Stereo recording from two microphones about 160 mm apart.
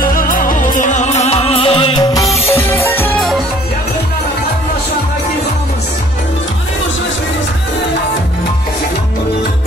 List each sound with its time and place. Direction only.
0.0 s music: 60° left (ahead or behind); by 2.0 s 35° left (ahead or behind)
2.2 s music: centre (ahead or behind)
2.5 s music: 10° left (ahead or behind)
3.2 s music: centre (ahead or behind)